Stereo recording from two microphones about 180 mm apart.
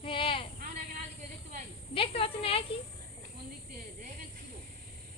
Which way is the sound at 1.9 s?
30° left (ahead or behind).